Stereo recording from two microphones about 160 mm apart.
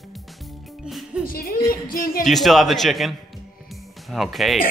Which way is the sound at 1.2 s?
65° left (ahead or behind).